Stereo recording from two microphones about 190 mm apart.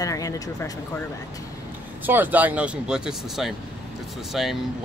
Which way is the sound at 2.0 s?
10° right (ahead or behind).